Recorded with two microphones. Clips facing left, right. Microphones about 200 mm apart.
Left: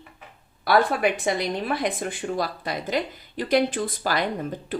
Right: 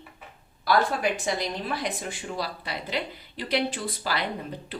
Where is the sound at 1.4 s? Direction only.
55° left (ahead or behind).